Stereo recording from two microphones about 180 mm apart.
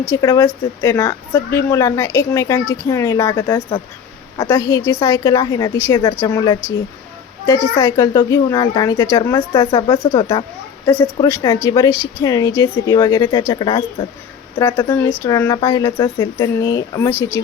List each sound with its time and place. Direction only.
0.1 s a woman's voice: 20° left (ahead or behind)
7.8 s speech: 20° left (ahead or behind)
14.8 s a woman's voice: 15° left (ahead or behind)